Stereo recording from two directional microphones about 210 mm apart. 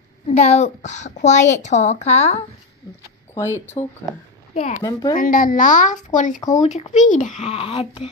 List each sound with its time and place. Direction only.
0.3 s a woman's voice: 30° left (ahead or behind)
3.8 s speech: 20° left (ahead or behind)
4.6 s a woman's voice: 35° left (ahead or behind)